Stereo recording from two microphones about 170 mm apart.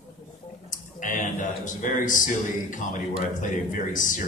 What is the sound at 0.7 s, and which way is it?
Speech, 50° left (ahead or behind).